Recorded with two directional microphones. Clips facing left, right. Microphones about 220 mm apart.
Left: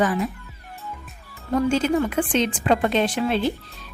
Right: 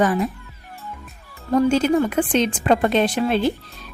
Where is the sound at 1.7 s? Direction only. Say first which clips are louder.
Right 3 dB; 40° right (ahead or behind).